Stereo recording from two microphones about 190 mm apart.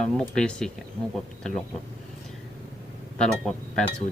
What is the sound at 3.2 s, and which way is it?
Speech, 5° left (ahead or behind).